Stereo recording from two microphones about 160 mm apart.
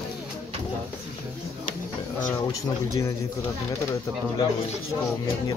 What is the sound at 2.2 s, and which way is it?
Speech, 15° left (ahead or behind).